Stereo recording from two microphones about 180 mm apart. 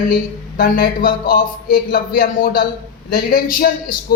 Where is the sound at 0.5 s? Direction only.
55° left (ahead or behind).